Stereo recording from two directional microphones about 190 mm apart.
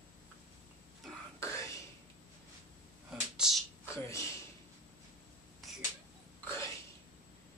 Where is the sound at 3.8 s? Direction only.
15° left (ahead or behind).